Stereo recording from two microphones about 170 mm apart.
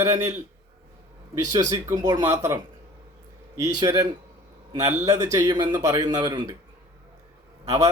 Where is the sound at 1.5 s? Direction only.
20° right (ahead or behind).